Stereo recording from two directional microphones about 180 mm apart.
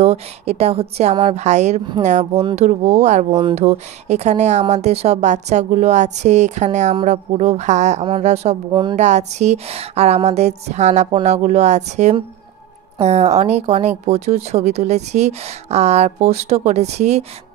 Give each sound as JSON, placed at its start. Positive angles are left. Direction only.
{"t": 0.0, "sound": "a woman's voice", "side_deg": -35}
{"t": 3.3, "sound": "speech", "side_deg": -25}
{"t": 3.5, "sound": "a woman's voice", "side_deg": -40}